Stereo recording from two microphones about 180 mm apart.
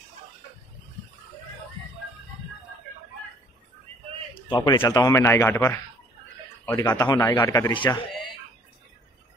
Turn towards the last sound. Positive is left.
turn(degrees=25)  # may be behind; listen again after turning